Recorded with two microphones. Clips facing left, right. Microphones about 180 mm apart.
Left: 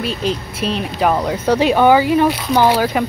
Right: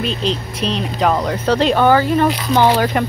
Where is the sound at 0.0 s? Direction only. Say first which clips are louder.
Even; 10° left (ahead or behind).